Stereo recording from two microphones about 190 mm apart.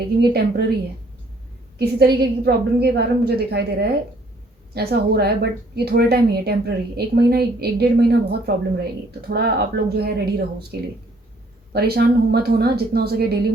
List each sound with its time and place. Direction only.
0.2 s a woman's voice: 60° right (ahead or behind)
1.8 s a woman's voice: 60° right (ahead or behind)